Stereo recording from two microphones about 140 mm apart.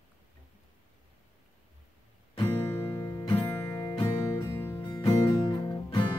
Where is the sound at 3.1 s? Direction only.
25° left (ahead or behind).